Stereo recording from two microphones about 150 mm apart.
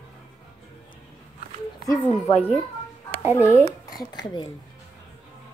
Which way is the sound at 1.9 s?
25° left (ahead or behind).